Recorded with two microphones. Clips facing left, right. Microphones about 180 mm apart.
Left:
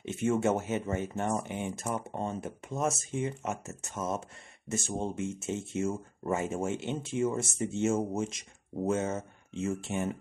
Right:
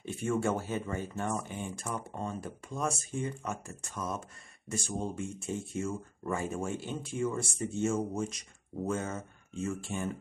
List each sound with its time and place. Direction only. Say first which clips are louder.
0.0 s speech: left 3 dB; 20° left (ahead or behind)